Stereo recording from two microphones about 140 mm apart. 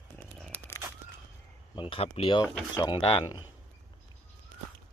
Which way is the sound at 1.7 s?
40° left (ahead or behind).